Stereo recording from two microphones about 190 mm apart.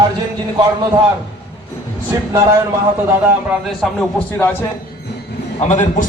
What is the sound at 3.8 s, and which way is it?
Speech, centre (ahead or behind).